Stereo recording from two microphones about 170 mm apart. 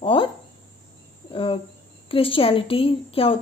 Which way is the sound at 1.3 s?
30° left (ahead or behind).